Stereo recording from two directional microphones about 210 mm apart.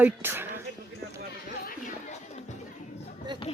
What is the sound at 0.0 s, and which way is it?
Speech, 10° right (ahead or behind).